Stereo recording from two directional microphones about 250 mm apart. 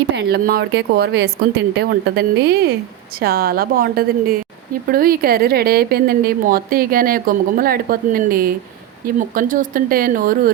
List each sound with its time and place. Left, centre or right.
0.2 s a woman's voice: right